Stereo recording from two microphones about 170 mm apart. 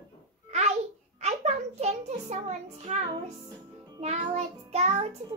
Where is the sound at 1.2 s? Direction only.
40° right (ahead or behind).